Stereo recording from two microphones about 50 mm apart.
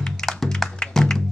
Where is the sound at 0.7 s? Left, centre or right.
Centre.